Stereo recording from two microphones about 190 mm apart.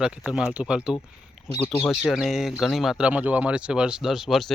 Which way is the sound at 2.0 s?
Centre (ahead or behind).